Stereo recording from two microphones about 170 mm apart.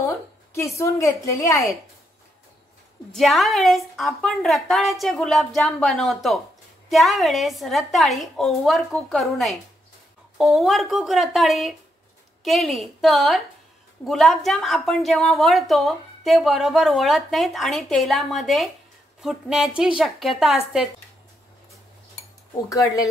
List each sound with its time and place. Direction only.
0.6 s a woman's voice: 15° left (ahead or behind)
3.1 s a woman's voice: centre (ahead or behind)
22.7 s speech: 20° left (ahead or behind)